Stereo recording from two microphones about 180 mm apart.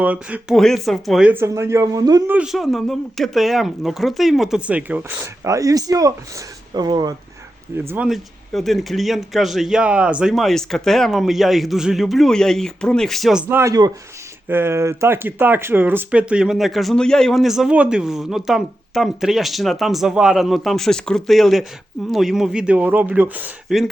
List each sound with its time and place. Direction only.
0.0 s speech: 10° right (ahead or behind)
2.3 s speech: 5° right (ahead or behind); by 7.1 s 25° right (ahead or behind)
7.9 s speech: 5° right (ahead or behind)
13.5 s speech: 15° right (ahead or behind)